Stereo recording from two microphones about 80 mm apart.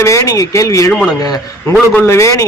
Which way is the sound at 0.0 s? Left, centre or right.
Left.